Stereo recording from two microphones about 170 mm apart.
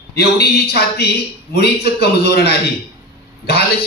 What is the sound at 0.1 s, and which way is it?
A man's voice, 70° left (ahead or behind).